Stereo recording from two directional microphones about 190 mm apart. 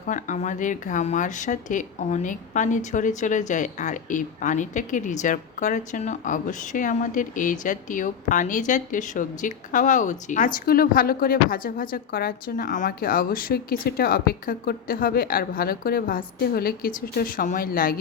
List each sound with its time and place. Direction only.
0.0 s speech: 40° left (ahead or behind)